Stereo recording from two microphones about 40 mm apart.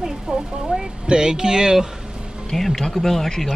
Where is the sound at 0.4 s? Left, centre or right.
Right.